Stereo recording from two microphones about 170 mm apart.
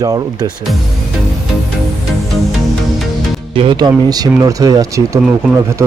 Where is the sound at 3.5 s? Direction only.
30° right (ahead or behind).